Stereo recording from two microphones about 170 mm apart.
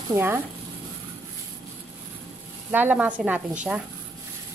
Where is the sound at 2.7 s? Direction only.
10° right (ahead or behind).